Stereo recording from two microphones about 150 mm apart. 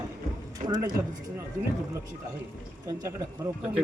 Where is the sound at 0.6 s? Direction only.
25° right (ahead or behind).